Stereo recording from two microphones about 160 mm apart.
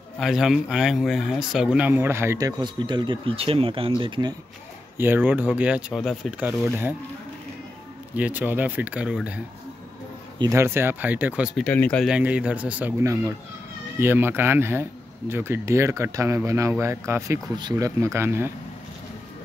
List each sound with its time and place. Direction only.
0.2 s speech: 5° right (ahead or behind); by 4.4 s 30° right (ahead or behind)
4.9 s speech: 15° right (ahead or behind)
8.1 s speech: 10° right (ahead or behind)
10.4 s speech: 15° right (ahead or behind)
11.6 s speech: 10° left (ahead or behind)
12.1 s speech: 10° right (ahead or behind)
13.0 s speech: 20° right (ahead or behind)